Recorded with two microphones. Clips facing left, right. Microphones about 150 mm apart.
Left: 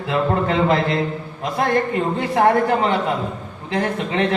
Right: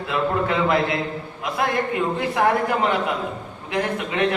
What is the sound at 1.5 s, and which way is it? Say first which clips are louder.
A man's voice: left 3 dB; 35° left (ahead or behind).